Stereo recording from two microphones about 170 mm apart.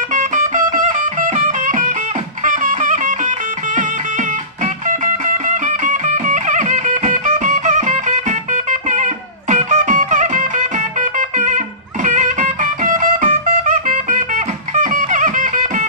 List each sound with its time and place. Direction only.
0.1 s music: 45° right (ahead or behind)